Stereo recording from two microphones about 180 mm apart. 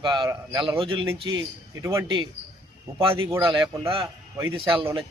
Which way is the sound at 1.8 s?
15° right (ahead or behind).